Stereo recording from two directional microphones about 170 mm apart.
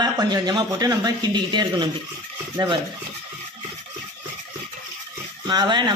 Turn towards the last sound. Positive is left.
turn(degrees=-25)  # may be behind; listen again after turning